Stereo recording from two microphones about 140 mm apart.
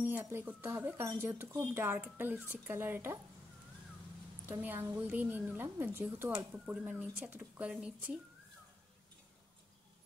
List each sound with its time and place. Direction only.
0.0 s a woman's voice: 15° right (ahead or behind)
4.5 s a woman's voice: 15° right (ahead or behind)